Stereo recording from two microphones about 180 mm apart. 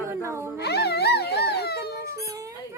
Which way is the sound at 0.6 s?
65° left (ahead or behind).